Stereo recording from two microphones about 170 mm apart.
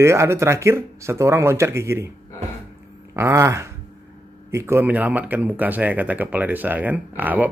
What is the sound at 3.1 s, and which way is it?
Speech, 15° right (ahead or behind).